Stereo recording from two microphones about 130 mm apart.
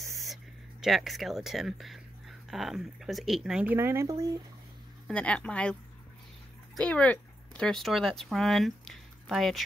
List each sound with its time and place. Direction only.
0.1 s a sound: centre (ahead or behind)
0.8 s speech: centre (ahead or behind)
3.7 s speech: 20° right (ahead or behind)
5.0 s speech: 10° left (ahead or behind)
6.8 s speech: 10° left (ahead or behind)